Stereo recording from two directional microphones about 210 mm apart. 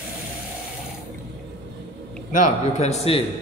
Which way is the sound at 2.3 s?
35° left (ahead or behind).